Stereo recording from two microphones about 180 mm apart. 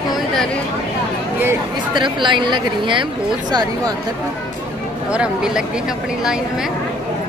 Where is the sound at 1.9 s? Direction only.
25° right (ahead or behind).